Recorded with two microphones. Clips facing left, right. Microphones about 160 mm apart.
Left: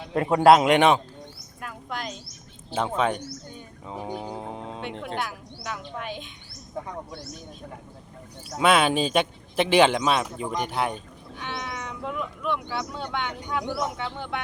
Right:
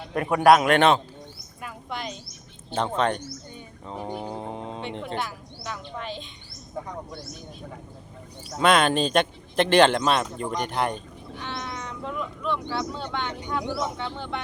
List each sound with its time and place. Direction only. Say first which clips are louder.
0.1 s a man's voice: left 1 dB; 25° left (ahead or behind)
1.6 s a sound: even; centre (ahead or behind)
2.6 s speech: even; 5° left (ahead or behind)
8.4 s a man's voice: even; 5° left (ahead or behind)
13.4 s speech: even; centre (ahead or behind)